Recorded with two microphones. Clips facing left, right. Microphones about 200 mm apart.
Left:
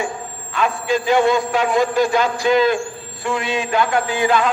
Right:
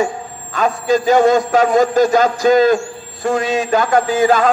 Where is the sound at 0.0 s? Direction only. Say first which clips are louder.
Right 6 dB; 40° right (ahead or behind).